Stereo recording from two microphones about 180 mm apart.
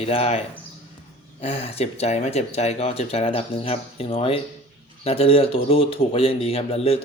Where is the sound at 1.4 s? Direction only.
35° left (ahead or behind).